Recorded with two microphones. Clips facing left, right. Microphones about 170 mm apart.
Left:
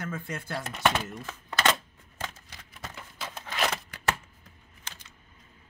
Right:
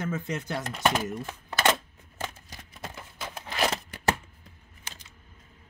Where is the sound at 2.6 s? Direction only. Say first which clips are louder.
Right 2 dB; 15° right (ahead or behind).